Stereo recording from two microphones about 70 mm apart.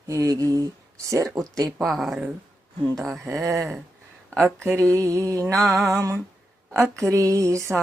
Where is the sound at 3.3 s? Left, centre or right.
Right.